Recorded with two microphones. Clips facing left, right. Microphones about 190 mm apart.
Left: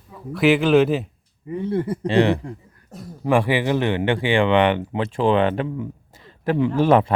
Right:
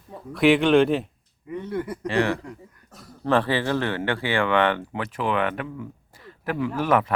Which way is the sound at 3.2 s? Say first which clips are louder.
Left 3 dB; 10° left (ahead or behind).